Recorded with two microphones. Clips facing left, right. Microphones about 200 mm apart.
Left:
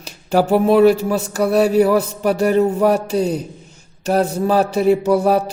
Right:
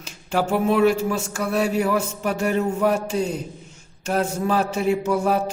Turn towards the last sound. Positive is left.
turn(degrees=35)  # may be behind; listen again after turning